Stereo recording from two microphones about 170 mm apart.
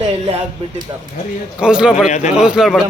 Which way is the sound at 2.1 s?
45° left (ahead or behind).